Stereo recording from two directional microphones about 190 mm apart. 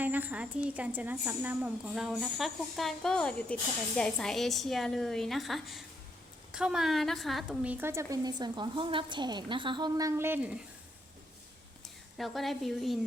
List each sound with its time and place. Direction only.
0.0 s a woman's voice: 10° right (ahead or behind)
12.1 s a woman's voice: centre (ahead or behind)